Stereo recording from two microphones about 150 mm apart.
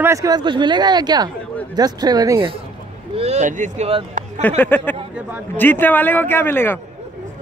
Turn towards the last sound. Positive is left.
turn(degrees=15)  # may be behind; listen again after turning